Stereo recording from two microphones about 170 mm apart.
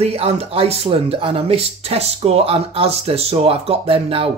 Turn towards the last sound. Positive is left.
turn(degrees=-35)  # may be behind; listen again after turning